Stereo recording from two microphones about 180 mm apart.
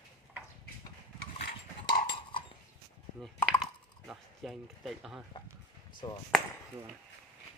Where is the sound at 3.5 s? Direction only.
Centre (ahead or behind).